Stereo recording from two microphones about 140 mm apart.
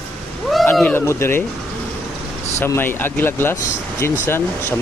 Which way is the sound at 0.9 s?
20° left (ahead or behind).